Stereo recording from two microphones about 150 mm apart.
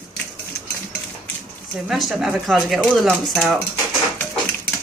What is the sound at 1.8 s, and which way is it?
Speech, centre (ahead or behind).